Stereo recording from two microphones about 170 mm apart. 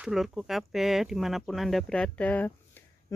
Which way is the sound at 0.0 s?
Centre (ahead or behind).